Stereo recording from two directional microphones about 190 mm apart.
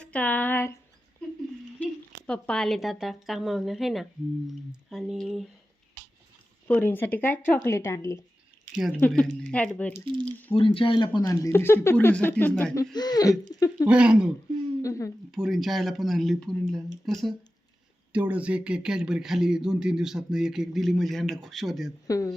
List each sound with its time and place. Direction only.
0.0 s speech: 5° left (ahead or behind)
2.2 s speech: 5° left (ahead or behind)
6.7 s speech: 10° left (ahead or behind)
8.7 s speech: 5° right (ahead or behind)
9.0 s speech: 5° left (ahead or behind)
9.9 s speech: 25° right (ahead or behind)
10.5 s speech: 30° left (ahead or behind); by 12.8 s 10° left (ahead or behind)
12.8 s speech: 20° left (ahead or behind)
13.8 s speech: 5° right (ahead or behind)
14.8 s speech: 15° left (ahead or behind)
15.3 s speech: centre (ahead or behind)
22.0 s speech: 20° left (ahead or behind)